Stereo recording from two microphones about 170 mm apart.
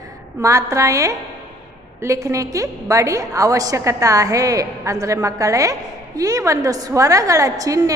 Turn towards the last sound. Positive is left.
turn(degrees=-20)  # may be behind; listen again after turning